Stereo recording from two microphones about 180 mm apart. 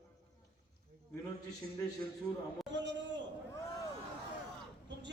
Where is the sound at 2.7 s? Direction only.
90° right.